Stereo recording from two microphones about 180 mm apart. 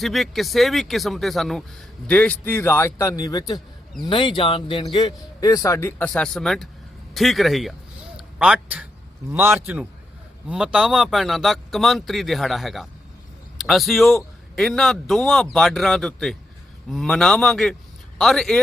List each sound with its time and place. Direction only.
0.0 s a man's voice: centre (ahead or behind)
8.1 s a sound: 5° right (ahead or behind)
9.3 s a man's voice: 10° right (ahead or behind)